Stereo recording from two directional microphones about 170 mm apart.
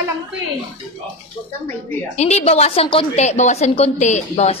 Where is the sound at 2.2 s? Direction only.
40° left (ahead or behind).